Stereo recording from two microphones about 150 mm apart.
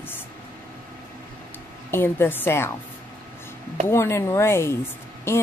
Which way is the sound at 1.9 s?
15° left (ahead or behind).